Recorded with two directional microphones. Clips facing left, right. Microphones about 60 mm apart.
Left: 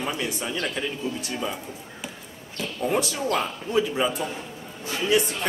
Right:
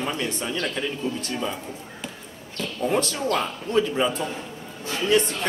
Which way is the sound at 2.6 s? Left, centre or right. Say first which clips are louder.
Right 1 dB; centre.